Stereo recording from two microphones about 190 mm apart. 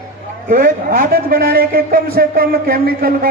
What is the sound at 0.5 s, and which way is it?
A man's voice, 50° right (ahead or behind).